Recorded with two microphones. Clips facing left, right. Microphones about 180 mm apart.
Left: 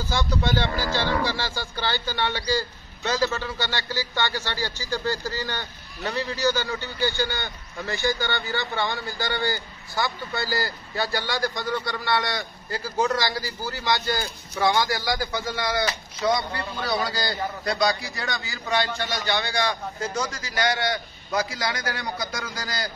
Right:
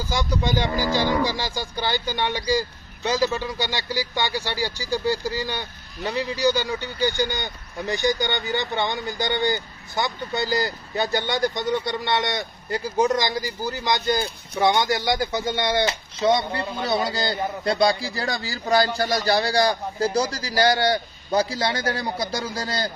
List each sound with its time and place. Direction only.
0.0 s a man's voice: 10° right (ahead or behind); by 22.8 s 30° right (ahead or behind)